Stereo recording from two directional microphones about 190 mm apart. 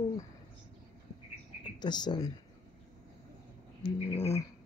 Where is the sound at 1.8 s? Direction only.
25° left (ahead or behind).